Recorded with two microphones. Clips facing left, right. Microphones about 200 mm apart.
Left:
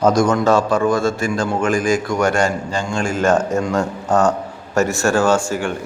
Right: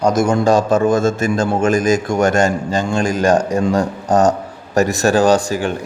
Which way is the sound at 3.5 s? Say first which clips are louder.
Right 3 dB; 30° right (ahead or behind).